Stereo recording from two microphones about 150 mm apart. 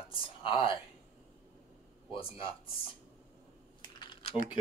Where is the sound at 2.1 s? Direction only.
35° left (ahead or behind).